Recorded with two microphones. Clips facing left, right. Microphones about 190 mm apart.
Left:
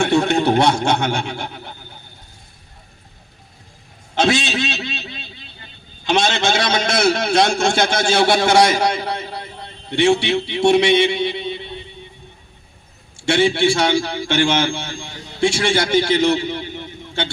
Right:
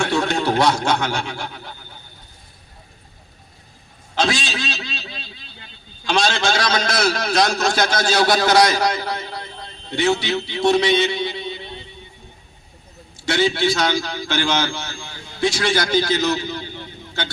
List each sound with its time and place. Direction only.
0.0 s a man's voice: 25° left (ahead or behind)
4.1 s a sound: 25° left (ahead or behind)
6.1 s a man's voice: 25° left (ahead or behind)
13.1 s a man's voice: 30° left (ahead or behind)